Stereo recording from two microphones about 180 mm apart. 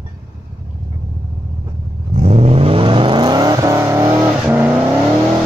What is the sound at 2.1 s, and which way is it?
Vehicle, 35° right (ahead or behind).